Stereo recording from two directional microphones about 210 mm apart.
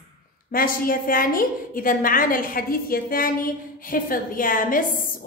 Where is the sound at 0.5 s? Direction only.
40° left (ahead or behind).